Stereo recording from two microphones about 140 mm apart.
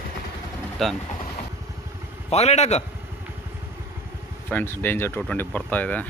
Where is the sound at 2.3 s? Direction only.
50° left (ahead or behind).